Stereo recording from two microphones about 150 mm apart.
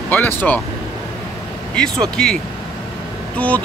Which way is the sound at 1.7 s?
5° left (ahead or behind).